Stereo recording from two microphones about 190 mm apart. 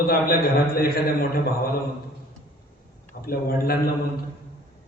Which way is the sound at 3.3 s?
50° left (ahead or behind).